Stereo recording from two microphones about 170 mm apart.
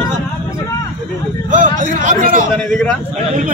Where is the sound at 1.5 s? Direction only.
50° right (ahead or behind).